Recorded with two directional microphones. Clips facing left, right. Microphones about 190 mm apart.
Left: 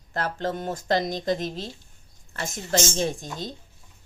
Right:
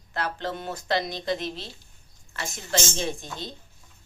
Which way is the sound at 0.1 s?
45° left (ahead or behind).